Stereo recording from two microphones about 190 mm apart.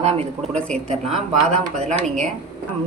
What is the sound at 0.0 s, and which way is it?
Speech, 35° right (ahead or behind).